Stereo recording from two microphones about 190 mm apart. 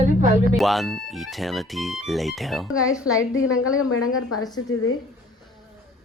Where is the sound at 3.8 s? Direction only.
90° left.